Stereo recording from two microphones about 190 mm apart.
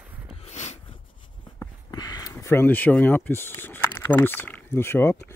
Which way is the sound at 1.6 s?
20° left (ahead or behind).